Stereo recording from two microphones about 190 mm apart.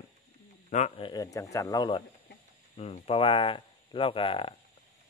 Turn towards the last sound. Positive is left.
turn(degrees=30)  # may be behind; listen again after turning